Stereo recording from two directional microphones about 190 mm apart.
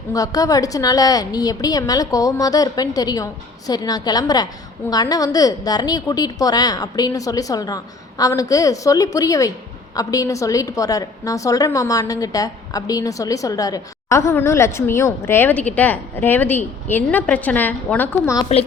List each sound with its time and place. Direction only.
0.1 s a woman's voice: 20° left (ahead or behind)